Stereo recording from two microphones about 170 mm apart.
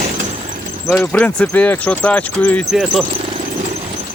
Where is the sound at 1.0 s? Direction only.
10° left (ahead or behind).